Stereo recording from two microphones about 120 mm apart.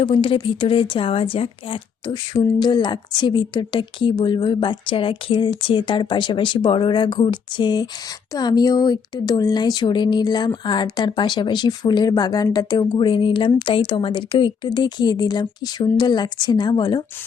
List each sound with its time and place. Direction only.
0.0 s a woman's voice: 45° left (ahead or behind)